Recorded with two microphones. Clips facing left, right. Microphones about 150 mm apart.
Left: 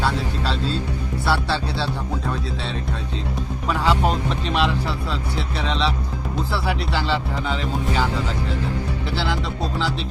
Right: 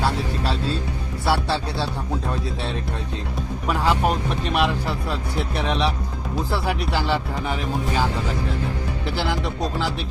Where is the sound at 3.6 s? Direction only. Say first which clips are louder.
Even; 10° right (ahead or behind).